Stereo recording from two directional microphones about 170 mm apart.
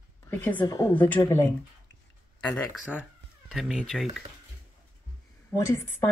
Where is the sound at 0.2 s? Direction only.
10° left (ahead or behind).